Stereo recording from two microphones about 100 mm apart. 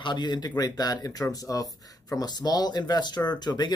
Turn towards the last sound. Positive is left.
turn(degrees=45)  # may be behind; listen again after turning